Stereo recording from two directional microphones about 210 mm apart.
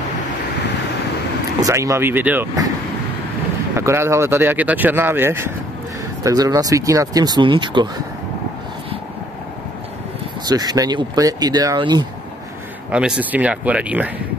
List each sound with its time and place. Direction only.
1.6 s speech: 15° right (ahead or behind)
3.7 s speech: 10° right (ahead or behind)
10.4 s speech: 20° right (ahead or behind)
12.9 s speech: 5° right (ahead or behind)